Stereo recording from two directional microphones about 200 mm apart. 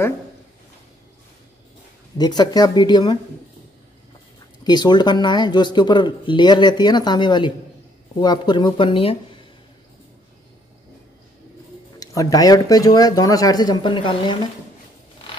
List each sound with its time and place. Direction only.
2.1 s speech: 20° left (ahead or behind)
4.6 s speech: 20° left (ahead or behind)
12.0 s speech: 15° left (ahead or behind)